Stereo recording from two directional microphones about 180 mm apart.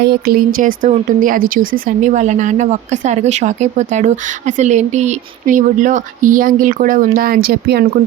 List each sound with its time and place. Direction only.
0.0 s speech: 60° right (ahead or behind)